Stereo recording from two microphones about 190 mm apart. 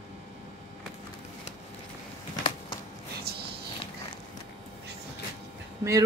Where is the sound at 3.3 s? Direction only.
55° right (ahead or behind).